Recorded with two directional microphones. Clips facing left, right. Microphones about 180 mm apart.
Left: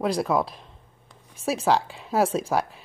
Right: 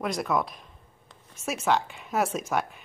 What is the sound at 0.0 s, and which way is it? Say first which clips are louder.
A woman's voice: left 4 dB; 30° left (ahead or behind).